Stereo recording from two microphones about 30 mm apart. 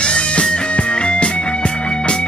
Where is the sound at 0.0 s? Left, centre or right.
Left.